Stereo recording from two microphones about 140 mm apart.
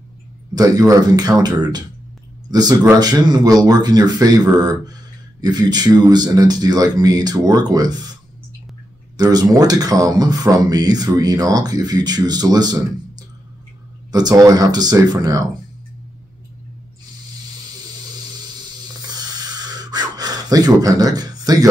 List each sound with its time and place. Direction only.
0.6 s speech: 25° right (ahead or behind)
9.1 s speech: 30° right (ahead or behind)
14.1 s speech: 25° right (ahead or behind)
18.9 s a sound: 30° right (ahead or behind)